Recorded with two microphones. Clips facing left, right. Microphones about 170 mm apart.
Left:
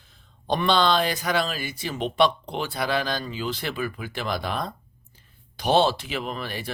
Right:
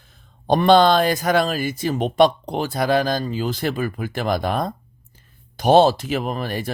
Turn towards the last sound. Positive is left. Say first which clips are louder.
# right 6 dB
turn(degrees=-45)  # may be behind; listen again after turning